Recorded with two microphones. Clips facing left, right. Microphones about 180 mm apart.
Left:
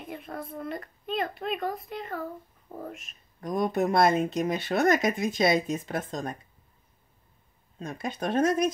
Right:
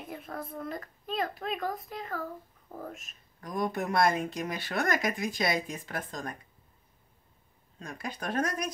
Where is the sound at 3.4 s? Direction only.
25° left (ahead or behind).